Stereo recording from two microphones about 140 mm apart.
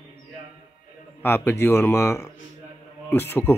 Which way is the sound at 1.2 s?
15° left (ahead or behind).